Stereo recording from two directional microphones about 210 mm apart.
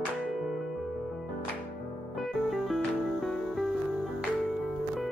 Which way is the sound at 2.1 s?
Centre (ahead or behind).